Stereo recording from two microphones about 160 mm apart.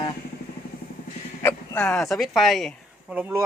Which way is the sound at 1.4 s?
15° left (ahead or behind).